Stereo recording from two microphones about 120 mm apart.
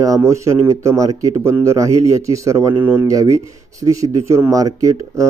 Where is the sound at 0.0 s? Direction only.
25° right (ahead or behind).